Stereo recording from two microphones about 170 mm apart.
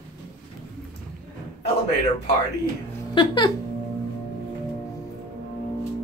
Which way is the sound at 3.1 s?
25° left (ahead or behind).